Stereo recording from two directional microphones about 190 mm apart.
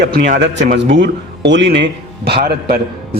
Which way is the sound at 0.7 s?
65° right (ahead or behind).